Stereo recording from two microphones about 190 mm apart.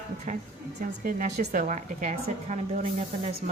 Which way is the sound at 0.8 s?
45° right (ahead or behind).